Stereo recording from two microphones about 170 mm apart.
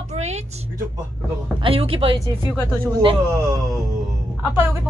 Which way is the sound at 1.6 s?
35° right (ahead or behind).